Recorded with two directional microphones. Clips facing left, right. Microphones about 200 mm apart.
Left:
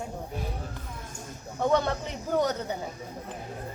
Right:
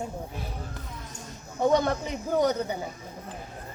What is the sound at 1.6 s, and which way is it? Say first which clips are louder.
A woman's voice: right 2 dB; 10° right (ahead or behind).